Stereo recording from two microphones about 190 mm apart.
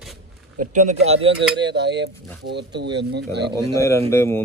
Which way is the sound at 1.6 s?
65° right (ahead or behind).